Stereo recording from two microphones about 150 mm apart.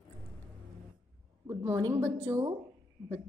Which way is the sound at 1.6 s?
20° right (ahead or behind).